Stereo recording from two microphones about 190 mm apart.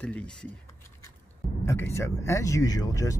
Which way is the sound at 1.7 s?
15° left (ahead or behind).